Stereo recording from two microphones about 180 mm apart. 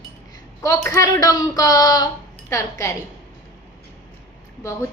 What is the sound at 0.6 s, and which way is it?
Speech, 15° left (ahead or behind).